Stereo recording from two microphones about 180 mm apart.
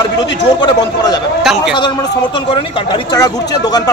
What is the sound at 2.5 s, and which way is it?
Speech, 25° left (ahead or behind).